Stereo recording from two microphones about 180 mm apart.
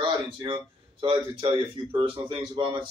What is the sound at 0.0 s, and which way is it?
Speech, 25° right (ahead or behind).